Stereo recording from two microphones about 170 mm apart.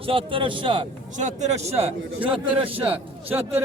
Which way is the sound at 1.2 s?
40° right (ahead or behind).